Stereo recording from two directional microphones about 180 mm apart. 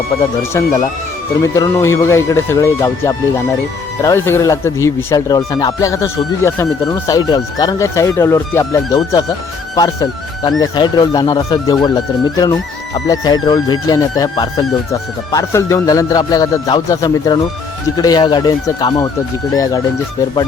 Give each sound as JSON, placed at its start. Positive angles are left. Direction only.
{"t": 0.1, "sound": "speech", "side_deg": 25}
{"t": 13.1, "sound": "speech", "side_deg": 20}